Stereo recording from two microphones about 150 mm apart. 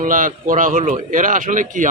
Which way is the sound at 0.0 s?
65° right (ahead or behind).